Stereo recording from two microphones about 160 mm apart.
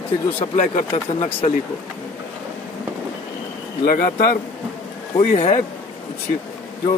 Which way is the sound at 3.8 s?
60° left (ahead or behind).